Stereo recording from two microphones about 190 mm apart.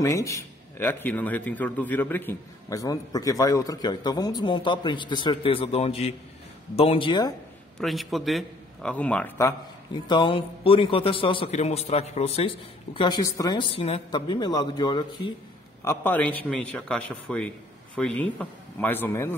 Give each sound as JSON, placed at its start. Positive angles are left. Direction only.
{"t": 0.0, "sound": "a man's voice", "side_deg": 15}
{"t": 7.8, "sound": "a man's voice", "side_deg": 0}
{"t": 10.0, "sound": "a man's voice", "side_deg": 25}
{"t": 15.8, "sound": "a man's voice", "side_deg": 10}